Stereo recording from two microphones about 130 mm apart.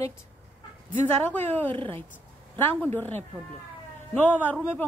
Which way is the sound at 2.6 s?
15° left (ahead or behind).